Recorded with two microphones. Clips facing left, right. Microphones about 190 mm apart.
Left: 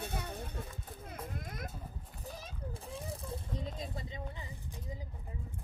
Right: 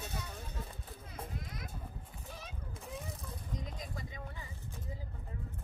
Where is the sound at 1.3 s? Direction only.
50° left (ahead or behind).